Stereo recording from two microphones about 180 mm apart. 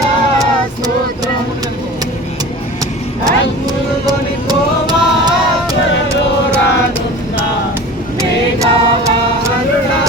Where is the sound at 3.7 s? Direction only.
20° right (ahead or behind).